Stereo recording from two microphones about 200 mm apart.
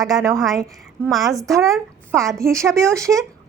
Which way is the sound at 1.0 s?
Centre (ahead or behind).